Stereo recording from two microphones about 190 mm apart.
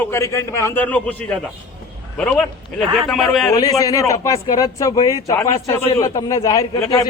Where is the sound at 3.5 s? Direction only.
20° left (ahead or behind).